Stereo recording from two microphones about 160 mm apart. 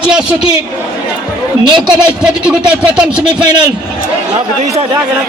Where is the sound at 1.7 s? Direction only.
25° right (ahead or behind).